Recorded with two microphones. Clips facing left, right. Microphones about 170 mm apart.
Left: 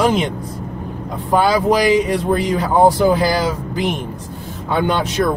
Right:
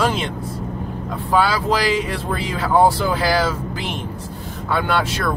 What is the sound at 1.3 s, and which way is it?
Speech, 15° left (ahead or behind).